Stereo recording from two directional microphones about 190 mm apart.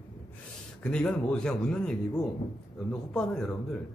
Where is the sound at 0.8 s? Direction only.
5° left (ahead or behind).